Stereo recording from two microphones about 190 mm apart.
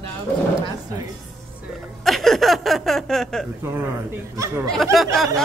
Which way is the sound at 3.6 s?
15° right (ahead or behind).